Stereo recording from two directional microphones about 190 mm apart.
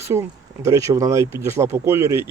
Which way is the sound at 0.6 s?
15° right (ahead or behind).